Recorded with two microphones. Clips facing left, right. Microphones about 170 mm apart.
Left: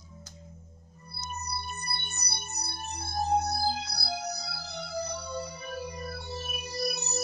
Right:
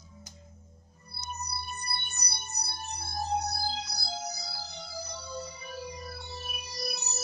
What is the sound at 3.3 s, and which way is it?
Music, 55° left (ahead or behind).